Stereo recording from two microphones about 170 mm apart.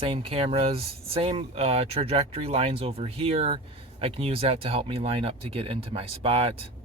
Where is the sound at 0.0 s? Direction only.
30° right (ahead or behind).